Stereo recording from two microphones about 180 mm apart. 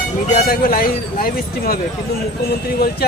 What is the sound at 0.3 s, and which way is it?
Speech, 55° left (ahead or behind).